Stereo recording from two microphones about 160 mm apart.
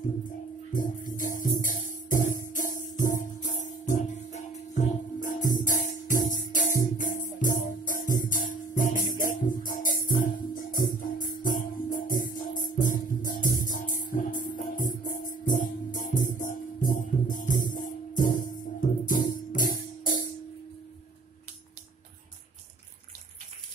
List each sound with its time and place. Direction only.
0.7 s music: 55° left (ahead or behind)